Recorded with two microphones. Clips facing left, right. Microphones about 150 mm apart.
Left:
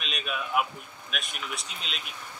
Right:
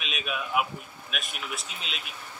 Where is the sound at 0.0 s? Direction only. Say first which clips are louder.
Even; centre (ahead or behind).